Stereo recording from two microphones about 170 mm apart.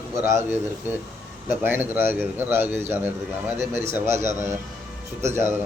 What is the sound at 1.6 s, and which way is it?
A man's voice, 10° right (ahead or behind).